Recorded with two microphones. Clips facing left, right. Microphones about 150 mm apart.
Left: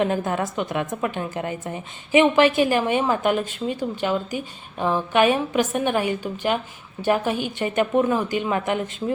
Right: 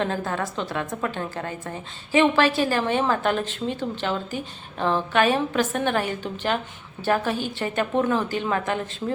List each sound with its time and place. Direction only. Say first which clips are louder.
0.0 s a woman's voice: left 4 dB; 15° left (ahead or behind)